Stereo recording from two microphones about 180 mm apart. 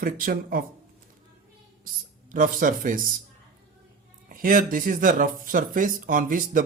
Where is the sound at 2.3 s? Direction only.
50° right (ahead or behind).